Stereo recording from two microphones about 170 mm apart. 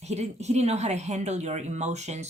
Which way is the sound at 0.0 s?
40° right (ahead or behind).